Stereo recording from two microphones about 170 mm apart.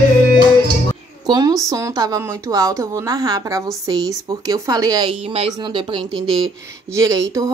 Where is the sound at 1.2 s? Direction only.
25° right (ahead or behind).